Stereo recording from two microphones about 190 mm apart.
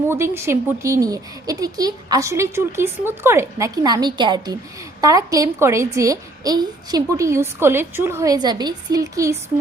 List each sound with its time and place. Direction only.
0.1 s a woman's voice: 15° right (ahead or behind)